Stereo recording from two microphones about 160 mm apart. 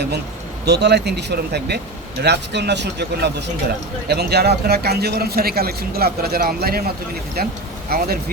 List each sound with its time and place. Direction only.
0.6 s a man's voice: 90° right; by 8.2 s 70° right (ahead or behind)